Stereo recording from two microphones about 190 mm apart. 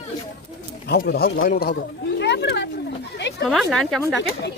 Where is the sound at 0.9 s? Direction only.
55° left (ahead or behind).